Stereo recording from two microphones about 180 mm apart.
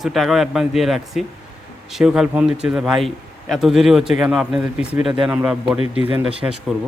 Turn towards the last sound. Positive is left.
turn(degrees=-5)  # may be behind; listen again after turning